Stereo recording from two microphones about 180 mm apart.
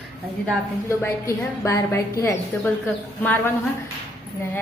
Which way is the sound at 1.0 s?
15° left (ahead or behind).